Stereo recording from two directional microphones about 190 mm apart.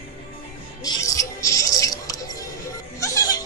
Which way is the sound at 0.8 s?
20° left (ahead or behind).